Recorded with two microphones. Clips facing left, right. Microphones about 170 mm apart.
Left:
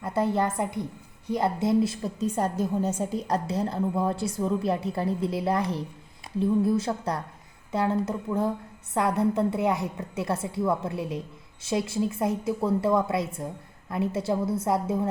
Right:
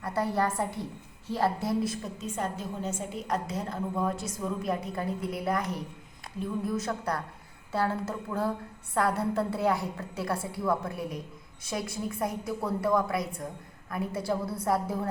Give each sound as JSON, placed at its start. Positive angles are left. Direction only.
{"t": 0.0, "sound": "a woman's voice", "side_deg": 20}